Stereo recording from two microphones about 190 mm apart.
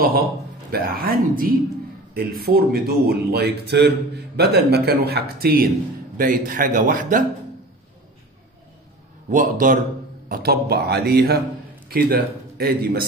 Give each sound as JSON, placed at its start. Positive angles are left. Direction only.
{"t": 0.7, "sound": "a man's voice", "side_deg": -50}
{"t": 9.3, "sound": "a man's voice", "side_deg": -45}